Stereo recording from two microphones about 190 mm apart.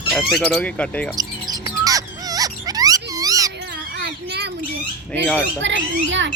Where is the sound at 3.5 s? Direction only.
60° right (ahead or behind).